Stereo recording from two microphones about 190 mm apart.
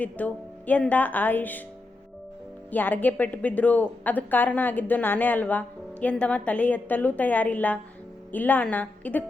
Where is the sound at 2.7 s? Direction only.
10° left (ahead or behind).